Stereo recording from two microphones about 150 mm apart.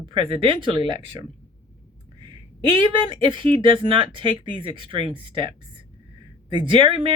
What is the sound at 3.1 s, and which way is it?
Speech, 35° right (ahead or behind).